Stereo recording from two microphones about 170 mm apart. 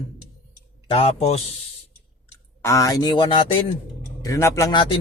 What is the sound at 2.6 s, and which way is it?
Speech, 20° left (ahead or behind).